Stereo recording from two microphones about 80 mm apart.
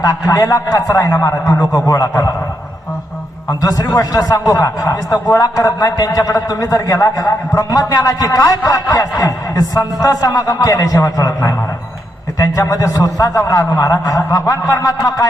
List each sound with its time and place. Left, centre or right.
0.0 s a man's voice: left
3.6 s a man's voice: left